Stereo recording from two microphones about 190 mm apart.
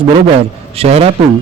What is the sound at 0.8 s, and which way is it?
Speech, 30° right (ahead or behind).